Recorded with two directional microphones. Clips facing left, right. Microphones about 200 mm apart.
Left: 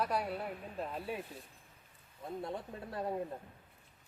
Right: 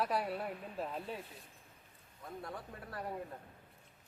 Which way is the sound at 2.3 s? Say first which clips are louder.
Left 5 dB; 25° left (ahead or behind).